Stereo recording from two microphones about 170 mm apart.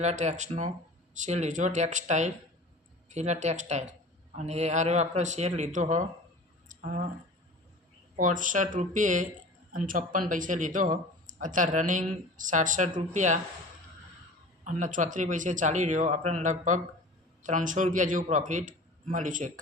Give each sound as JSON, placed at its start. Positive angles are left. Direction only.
{"t": 0.0, "sound": "speech", "side_deg": -40}
{"t": 6.7, "sound": "a sound", "side_deg": -50}
{"t": 8.1, "sound": "speech", "side_deg": -50}
{"t": 14.6, "sound": "speech", "side_deg": -45}